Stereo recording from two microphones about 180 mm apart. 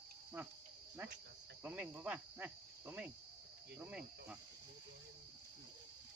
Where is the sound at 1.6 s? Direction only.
10° right (ahead or behind).